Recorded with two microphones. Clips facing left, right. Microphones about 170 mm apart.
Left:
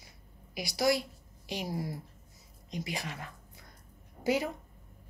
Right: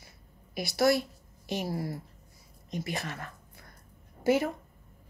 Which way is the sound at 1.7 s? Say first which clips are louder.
Right 2 dB; 15° left (ahead or behind).